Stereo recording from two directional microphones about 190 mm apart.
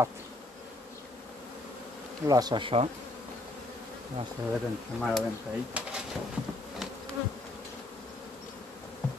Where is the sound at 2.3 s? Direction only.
20° right (ahead or behind).